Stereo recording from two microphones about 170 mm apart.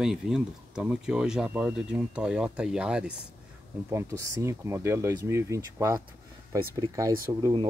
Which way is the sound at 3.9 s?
15° right (ahead or behind).